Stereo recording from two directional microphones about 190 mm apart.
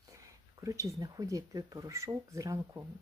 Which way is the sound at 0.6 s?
20° right (ahead or behind).